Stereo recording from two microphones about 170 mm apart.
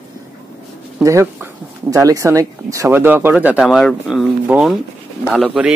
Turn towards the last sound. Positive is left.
turn(degrees=-5)  # may be behind; listen again after turning